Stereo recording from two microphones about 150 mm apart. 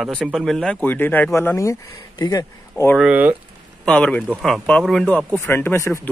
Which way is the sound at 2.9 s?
10° right (ahead or behind).